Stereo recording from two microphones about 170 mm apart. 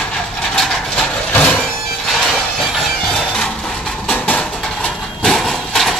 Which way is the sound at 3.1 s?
5° left (ahead or behind).